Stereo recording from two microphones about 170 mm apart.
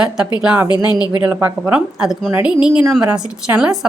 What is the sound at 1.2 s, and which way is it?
A woman's voice, 10° right (ahead or behind).